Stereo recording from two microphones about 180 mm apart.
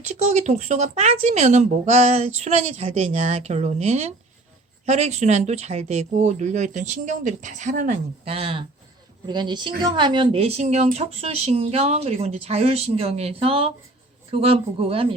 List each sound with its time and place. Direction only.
0.1 s speech: 40° right (ahead or behind)